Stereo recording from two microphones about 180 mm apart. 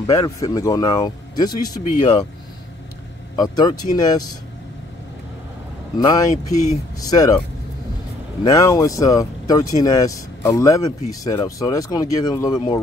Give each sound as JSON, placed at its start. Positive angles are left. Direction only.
{"t": 0.0, "sound": "speech", "side_deg": 20}
{"t": 3.3, "sound": "speech", "side_deg": 20}
{"t": 5.9, "sound": "speech", "side_deg": 20}
{"t": 8.5, "sound": "speech", "side_deg": 20}